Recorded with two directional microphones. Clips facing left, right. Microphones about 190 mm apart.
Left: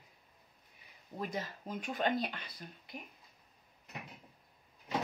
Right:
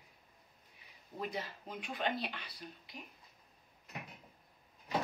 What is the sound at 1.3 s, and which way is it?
Speech, 45° left (ahead or behind).